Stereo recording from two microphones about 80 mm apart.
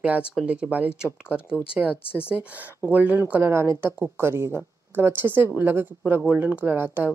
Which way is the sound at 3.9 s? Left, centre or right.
Centre.